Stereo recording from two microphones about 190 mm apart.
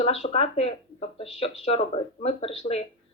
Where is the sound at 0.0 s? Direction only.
30° left (ahead or behind).